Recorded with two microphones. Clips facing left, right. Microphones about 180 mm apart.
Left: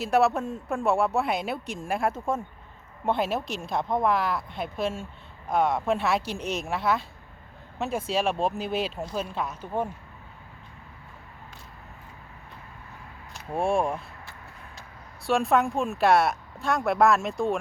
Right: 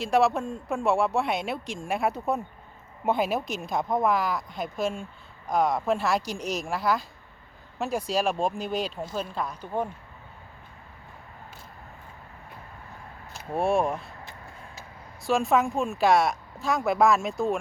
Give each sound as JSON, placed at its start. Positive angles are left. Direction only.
{"t": 0.0, "sound": "a man's voice", "side_deg": 5}
{"t": 6.4, "sound": "a woman's voice", "side_deg": -35}
{"t": 6.7, "sound": "a man's voice", "side_deg": 0}
{"t": 13.3, "sound": "speech", "side_deg": 0}